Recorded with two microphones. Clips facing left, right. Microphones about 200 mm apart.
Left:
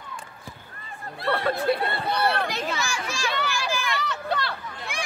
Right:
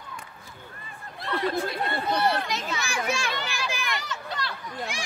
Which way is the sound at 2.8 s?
60° right (ahead or behind).